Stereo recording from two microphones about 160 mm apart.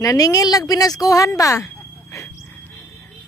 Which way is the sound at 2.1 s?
20° left (ahead or behind).